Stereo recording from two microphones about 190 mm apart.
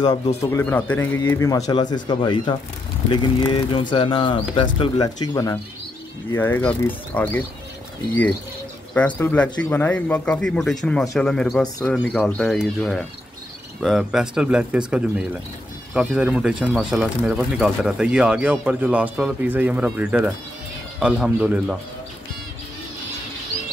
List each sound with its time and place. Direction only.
0.5 s speech: 10° left (ahead or behind)
8.9 s speech: 10° left (ahead or behind)